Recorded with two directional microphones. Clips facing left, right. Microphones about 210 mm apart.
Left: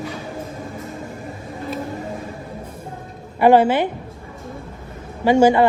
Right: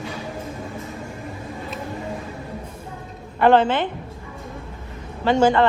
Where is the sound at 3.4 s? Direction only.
10° left (ahead or behind).